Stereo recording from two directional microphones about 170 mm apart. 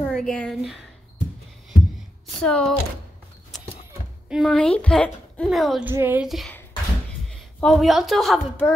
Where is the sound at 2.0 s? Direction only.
5° left (ahead or behind).